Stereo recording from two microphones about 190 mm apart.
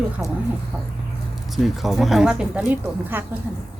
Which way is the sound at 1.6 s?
Centre (ahead or behind).